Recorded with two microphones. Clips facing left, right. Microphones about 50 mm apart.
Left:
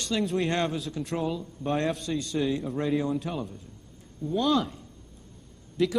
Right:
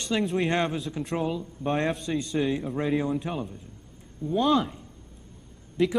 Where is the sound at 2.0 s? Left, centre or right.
Right.